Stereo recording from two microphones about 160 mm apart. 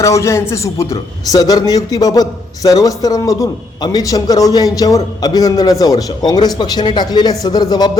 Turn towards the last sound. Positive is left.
turn(degrees=25)  # may be behind; listen again after turning